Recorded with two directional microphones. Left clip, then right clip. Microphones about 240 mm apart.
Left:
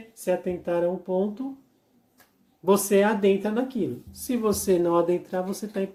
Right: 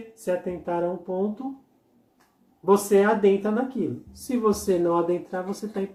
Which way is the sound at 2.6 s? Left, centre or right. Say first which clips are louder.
Right 1 dB; left.